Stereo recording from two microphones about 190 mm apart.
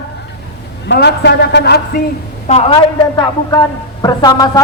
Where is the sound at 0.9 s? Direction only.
65° left (ahead or behind).